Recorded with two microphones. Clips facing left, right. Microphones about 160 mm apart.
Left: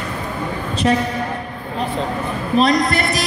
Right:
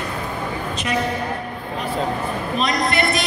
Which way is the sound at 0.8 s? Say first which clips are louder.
Left 7 dB; 35° left (ahead or behind).